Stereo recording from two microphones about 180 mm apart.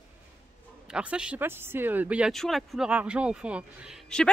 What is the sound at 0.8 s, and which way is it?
Speech, 5° right (ahead or behind).